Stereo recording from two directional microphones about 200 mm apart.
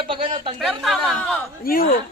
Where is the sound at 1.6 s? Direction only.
45° left (ahead or behind).